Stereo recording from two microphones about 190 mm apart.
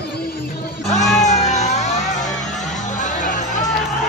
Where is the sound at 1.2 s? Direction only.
40° left (ahead or behind).